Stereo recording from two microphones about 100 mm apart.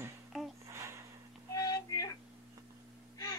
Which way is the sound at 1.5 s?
35° left (ahead or behind).